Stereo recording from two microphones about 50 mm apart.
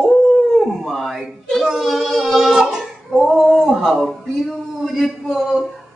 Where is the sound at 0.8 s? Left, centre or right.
Centre.